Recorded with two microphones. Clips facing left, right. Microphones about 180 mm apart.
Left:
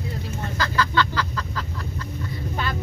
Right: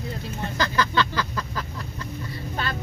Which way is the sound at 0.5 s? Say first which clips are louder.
Even; 15° right (ahead or behind).